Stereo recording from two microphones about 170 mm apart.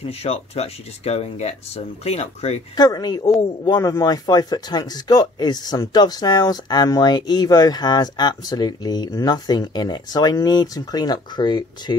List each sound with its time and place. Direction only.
0.0 s speech: 35° left (ahead or behind)
2.7 s speech: 25° left (ahead or behind)